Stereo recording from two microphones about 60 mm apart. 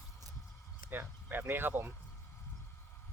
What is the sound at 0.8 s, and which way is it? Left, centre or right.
Speech, right.